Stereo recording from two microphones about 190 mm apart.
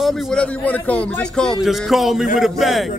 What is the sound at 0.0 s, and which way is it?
A man's voice, centre (ahead or behind).